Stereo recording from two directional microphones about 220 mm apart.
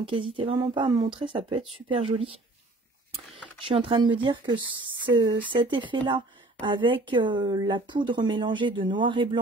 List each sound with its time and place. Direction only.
0.0 s a woman's voice: 25° right (ahead or behind)
3.6 s a woman's voice: 25° right (ahead or behind)